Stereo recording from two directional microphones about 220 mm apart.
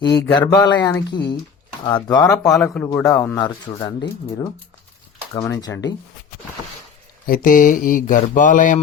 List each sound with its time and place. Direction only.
0.2 s speech: 20° left (ahead or behind)
2.4 s speech: 5° left (ahead or behind)
7.3 s speech: 40° left (ahead or behind)